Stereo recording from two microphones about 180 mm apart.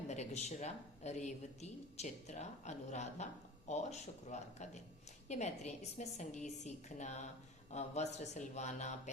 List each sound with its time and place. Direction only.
0.1 s speech: 40° left (ahead or behind)